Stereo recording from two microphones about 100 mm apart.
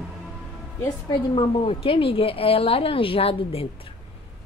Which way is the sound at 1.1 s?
60° left (ahead or behind).